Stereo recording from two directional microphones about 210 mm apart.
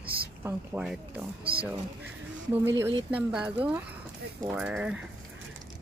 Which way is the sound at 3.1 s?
5° right (ahead or behind).